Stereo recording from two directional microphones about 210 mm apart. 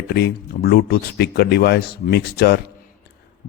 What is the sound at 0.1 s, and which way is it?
Speech, 50° left (ahead or behind).